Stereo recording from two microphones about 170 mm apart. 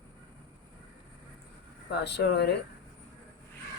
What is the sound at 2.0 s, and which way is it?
Chicken, 80° left.